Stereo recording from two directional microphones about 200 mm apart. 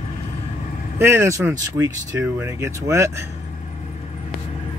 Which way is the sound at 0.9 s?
10° right (ahead or behind).